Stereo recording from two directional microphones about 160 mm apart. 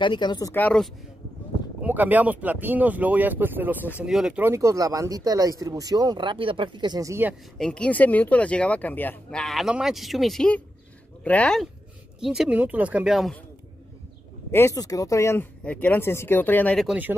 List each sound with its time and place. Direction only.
0.0 s speech: 30° left (ahead or behind)
0.6 s speech: 10° left (ahead or behind)
1.8 s speech: 10° right (ahead or behind)
7.5 s speech: 5° left (ahead or behind)
14.5 s speech: 15° left (ahead or behind)
16.8 s speech: 5° right (ahead or behind)